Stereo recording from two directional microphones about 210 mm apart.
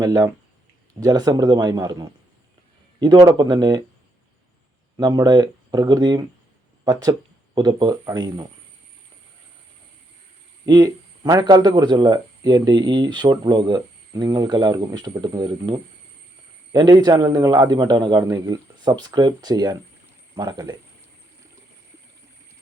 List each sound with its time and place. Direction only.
0.0 s a man's voice: 20° right (ahead or behind)
4.9 s a man's voice: 20° right (ahead or behind)
10.7 s a man's voice: 20° right (ahead or behind)